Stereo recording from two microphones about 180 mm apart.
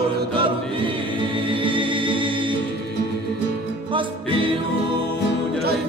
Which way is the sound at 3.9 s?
30° right (ahead or behind).